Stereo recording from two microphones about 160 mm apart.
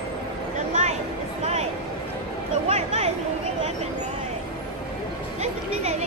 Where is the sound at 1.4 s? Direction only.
40° right (ahead or behind).